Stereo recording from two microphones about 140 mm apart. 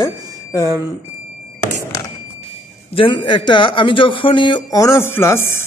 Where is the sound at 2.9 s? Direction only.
35° left (ahead or behind).